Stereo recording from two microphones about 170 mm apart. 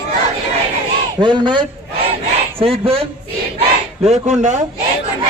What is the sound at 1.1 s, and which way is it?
Speech, 25° right (ahead or behind).